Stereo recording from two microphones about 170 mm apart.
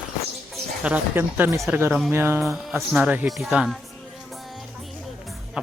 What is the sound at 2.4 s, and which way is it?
Speech, centre (ahead or behind).